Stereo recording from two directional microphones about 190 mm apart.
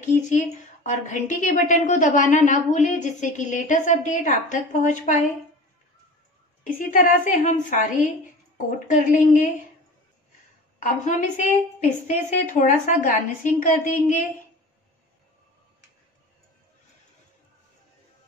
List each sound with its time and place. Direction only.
0.3 s a woman's voice: 40° left (ahead or behind)
6.6 s a woman's voice: 45° left (ahead or behind)
11.1 s a woman's voice: 40° left (ahead or behind)